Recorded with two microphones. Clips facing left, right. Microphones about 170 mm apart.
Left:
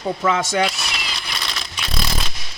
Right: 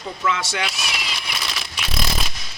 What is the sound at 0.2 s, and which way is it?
Speech, 40° left (ahead or behind).